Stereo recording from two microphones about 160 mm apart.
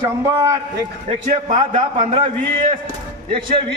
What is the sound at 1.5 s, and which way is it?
A man's voice, 40° right (ahead or behind).